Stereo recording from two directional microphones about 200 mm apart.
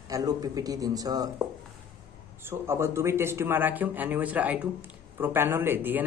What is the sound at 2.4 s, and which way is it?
Speech, 10° right (ahead or behind).